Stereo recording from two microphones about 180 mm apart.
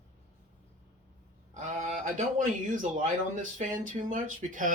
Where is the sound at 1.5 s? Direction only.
40° right (ahead or behind).